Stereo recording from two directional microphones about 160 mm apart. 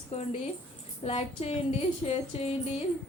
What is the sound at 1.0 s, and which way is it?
A woman's voice, 40° left (ahead or behind).